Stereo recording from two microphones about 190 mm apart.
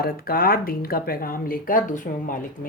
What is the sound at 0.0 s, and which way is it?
Speech, 50° left (ahead or behind).